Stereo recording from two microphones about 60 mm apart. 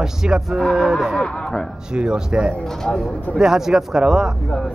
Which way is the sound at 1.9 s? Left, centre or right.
Centre.